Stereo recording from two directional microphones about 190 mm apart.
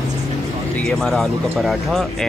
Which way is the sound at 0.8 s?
Centre (ahead or behind).